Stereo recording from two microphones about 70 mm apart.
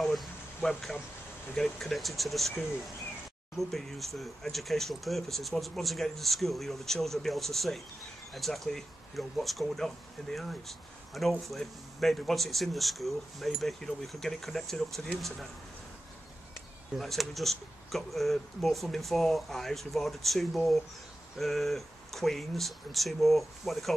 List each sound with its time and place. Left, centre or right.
0.0 s a sound: centre
1.5 s speech: centre
3.5 s speech: centre
16.9 s speech: centre